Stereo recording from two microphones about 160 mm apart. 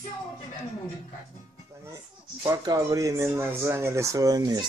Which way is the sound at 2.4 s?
20° right (ahead or behind).